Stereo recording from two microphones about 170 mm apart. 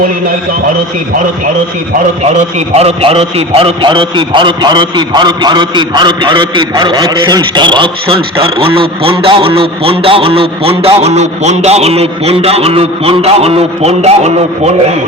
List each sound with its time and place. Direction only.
2.7 s a man's voice: 35° right (ahead or behind)